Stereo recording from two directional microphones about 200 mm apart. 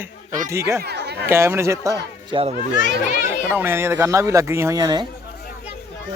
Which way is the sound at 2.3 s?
30° right (ahead or behind).